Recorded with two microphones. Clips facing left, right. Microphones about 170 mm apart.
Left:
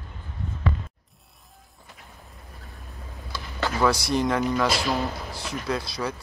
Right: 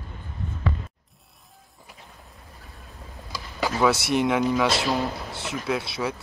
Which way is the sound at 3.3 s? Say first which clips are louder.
Right 1 dB; 10° right (ahead or behind).